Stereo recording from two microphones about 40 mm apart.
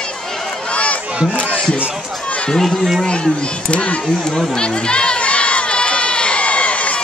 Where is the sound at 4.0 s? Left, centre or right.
Centre.